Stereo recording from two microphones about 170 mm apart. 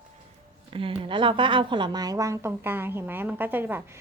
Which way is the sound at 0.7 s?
30° right (ahead or behind).